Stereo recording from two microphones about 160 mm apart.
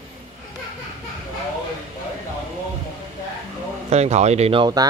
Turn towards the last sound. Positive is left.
turn(degrees=-40)  # may be behind; listen again after turning